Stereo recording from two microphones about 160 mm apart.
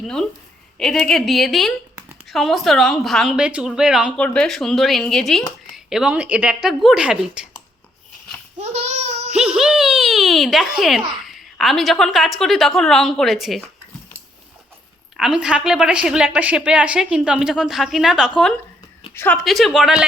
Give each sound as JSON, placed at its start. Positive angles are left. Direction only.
{"t": 0.0, "sound": "a woman's voice", "side_deg": 5}
{"t": 8.5, "sound": "babbling", "side_deg": -45}
{"t": 9.3, "sound": "a woman's voice", "side_deg": -5}
{"t": 15.1, "sound": "a woman's voice", "side_deg": -5}
{"t": 19.1, "sound": "speech", "side_deg": 15}
{"t": 19.4, "sound": "a woman's voice", "side_deg": 0}